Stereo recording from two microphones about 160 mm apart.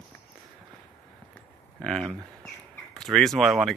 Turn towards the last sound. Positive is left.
turn(degrees=0)  # may be behind; listen again after turning